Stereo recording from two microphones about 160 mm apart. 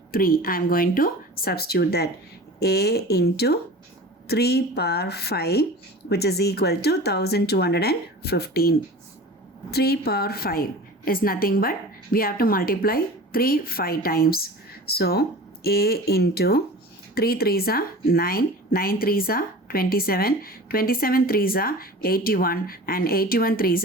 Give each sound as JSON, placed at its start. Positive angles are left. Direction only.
{"t": 0.1, "sound": "speech", "side_deg": 65}
{"t": 9.7, "sound": "a woman's voice", "side_deg": 80}